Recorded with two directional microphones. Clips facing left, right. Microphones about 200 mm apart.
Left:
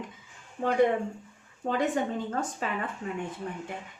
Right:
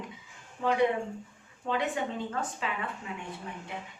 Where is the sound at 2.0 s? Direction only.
45° left (ahead or behind).